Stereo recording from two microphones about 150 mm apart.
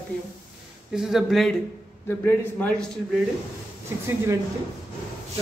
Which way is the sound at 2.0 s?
10° left (ahead or behind).